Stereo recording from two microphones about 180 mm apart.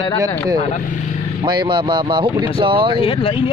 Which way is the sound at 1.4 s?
25° right (ahead or behind).